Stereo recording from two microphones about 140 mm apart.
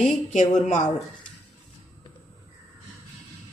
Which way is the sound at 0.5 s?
60° left (ahead or behind).